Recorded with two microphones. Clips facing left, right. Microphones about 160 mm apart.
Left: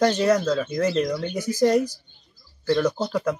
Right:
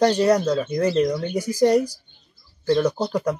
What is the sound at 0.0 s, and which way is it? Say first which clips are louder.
Speech: right 2 dB; 10° right (ahead or behind).